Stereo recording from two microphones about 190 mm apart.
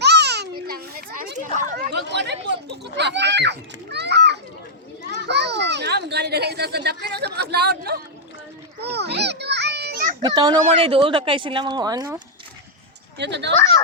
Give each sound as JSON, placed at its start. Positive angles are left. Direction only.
{"t": 0.0, "sound": "children playing", "side_deg": -60}
{"t": 1.7, "sound": "chatter", "side_deg": -60}
{"t": 5.3, "sound": "a sound", "side_deg": -60}
{"t": 8.8, "sound": "children playing", "side_deg": -60}
{"t": 10.2, "sound": "speech", "side_deg": -20}
{"t": 13.1, "sound": "speech", "side_deg": -65}